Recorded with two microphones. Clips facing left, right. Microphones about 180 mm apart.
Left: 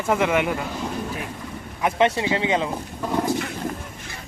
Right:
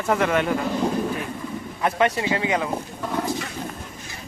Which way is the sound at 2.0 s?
20° left (ahead or behind).